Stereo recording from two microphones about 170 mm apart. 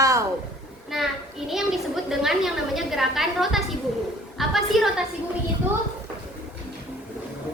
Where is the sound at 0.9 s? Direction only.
Centre (ahead or behind).